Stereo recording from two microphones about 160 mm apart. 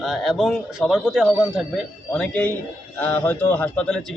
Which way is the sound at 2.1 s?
10° left (ahead or behind).